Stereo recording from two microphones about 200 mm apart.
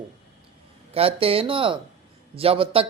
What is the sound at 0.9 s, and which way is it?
Speech, 30° right (ahead or behind).